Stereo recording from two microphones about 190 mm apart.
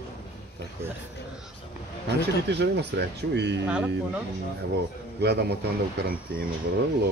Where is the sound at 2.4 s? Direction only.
60° right (ahead or behind).